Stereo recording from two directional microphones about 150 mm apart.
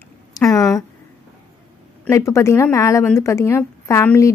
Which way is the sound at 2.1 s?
20° left (ahead or behind).